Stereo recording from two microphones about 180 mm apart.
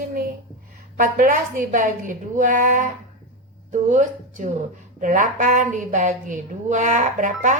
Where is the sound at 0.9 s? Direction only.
50° right (ahead or behind).